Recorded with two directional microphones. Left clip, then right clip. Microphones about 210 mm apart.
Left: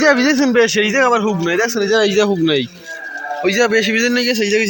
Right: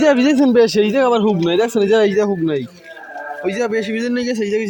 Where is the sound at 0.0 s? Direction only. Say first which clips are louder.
Even; 30° right (ahead or behind).